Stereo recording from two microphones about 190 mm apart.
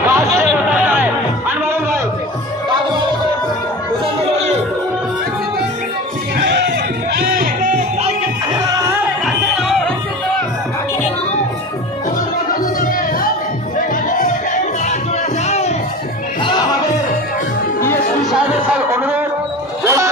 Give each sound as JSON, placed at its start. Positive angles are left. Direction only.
{"t": 0.0, "sound": "music", "side_deg": -10}
{"t": 6.4, "sound": "music", "side_deg": -65}
{"t": 7.2, "sound": "music", "side_deg": -50}
{"t": 13.7, "sound": "music", "side_deg": 45}
{"t": 18.7, "sound": "a sound", "side_deg": -10}
{"t": 19.8, "sound": "music", "side_deg": -15}